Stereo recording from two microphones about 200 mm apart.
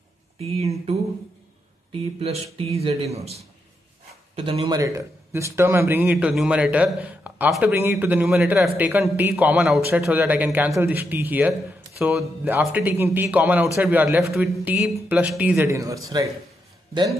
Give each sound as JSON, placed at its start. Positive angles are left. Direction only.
{"t": 0.4, "sound": "a man's voice", "side_deg": -30}